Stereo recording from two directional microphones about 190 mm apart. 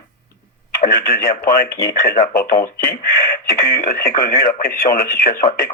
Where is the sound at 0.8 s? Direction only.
50° left (ahead or behind).